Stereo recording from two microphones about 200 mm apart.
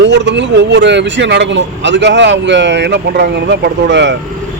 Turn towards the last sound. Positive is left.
turn(degrees=-60)  # may be behind; listen again after turning